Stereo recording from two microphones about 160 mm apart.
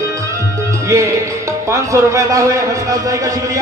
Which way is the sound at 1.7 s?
20° right (ahead or behind).